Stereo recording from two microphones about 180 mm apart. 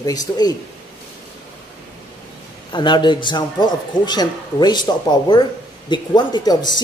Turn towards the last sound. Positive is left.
turn(degrees=20)  # may be behind; listen again after turning